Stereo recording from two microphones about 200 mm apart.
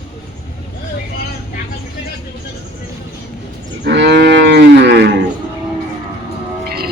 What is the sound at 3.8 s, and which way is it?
Cattle, 60° right (ahead or behind).